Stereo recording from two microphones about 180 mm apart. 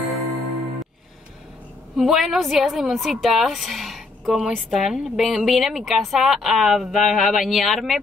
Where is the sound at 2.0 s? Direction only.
Centre (ahead or behind).